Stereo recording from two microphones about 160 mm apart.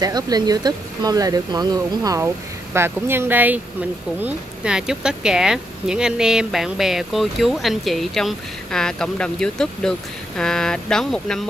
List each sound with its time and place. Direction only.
0.0 s speech: 25° right (ahead or behind); by 11.4 s 5° left (ahead or behind)